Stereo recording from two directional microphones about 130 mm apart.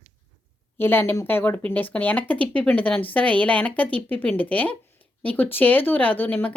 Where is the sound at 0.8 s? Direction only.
15° left (ahead or behind).